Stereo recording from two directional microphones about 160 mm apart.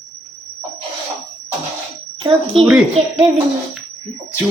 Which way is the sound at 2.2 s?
35° right (ahead or behind).